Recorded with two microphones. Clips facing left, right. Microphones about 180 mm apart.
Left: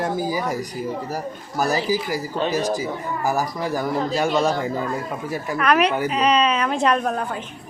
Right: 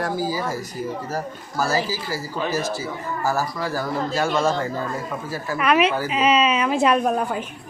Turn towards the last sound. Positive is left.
turn(degrees=-10)  # may be behind; listen again after turning